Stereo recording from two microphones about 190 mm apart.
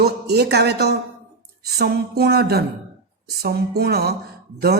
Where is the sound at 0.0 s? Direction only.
55° right (ahead or behind).